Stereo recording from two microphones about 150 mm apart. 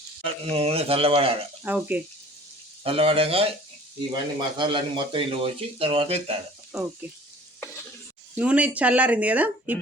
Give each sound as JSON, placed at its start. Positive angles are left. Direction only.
{"t": 0.2, "sound": "speech", "side_deg": -40}
{"t": 1.6, "sound": "speech", "side_deg": -10}
{"t": 2.8, "sound": "speech", "side_deg": -40}
{"t": 8.4, "sound": "speech", "side_deg": -10}